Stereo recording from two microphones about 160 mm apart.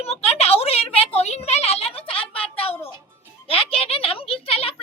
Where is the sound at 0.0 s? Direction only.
40° left (ahead or behind).